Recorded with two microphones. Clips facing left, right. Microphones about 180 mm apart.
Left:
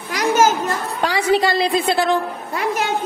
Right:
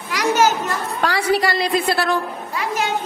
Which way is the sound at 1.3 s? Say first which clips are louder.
Left 3 dB; 25° left (ahead or behind).